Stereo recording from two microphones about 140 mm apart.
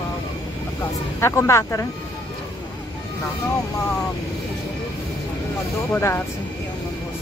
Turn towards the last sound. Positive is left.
turn(degrees=15)  # may be behind; listen again after turning